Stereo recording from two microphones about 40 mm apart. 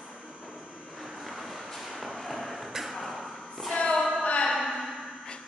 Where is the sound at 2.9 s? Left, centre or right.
Centre.